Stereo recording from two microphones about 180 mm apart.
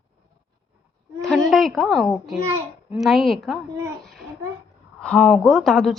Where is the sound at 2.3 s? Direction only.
15° right (ahead or behind).